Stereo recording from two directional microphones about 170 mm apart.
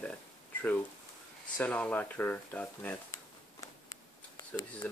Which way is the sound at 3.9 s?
20° left (ahead or behind).